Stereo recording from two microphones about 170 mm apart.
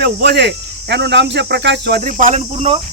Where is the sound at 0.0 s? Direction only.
75° right (ahead or behind); by 2.0 s 90° right.